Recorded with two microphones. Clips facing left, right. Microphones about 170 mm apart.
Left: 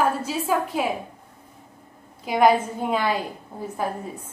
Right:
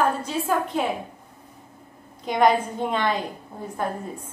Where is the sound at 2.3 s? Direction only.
5° left (ahead or behind).